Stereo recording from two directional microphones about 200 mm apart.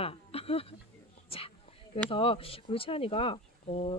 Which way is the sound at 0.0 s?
30° left (ahead or behind).